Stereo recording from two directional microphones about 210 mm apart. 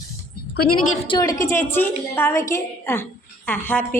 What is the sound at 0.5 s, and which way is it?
Speech, 90° left.